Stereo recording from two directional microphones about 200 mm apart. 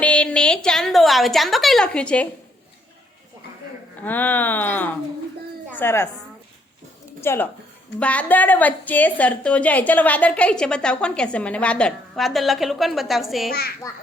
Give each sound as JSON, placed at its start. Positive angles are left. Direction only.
{"t": 0.0, "sound": "a woman's voice", "side_deg": 5}
{"t": 4.0, "sound": "speech", "side_deg": 10}
{"t": 7.2, "sound": "a woman's voice", "side_deg": 10}
{"t": 13.5, "sound": "a child's voice", "side_deg": 50}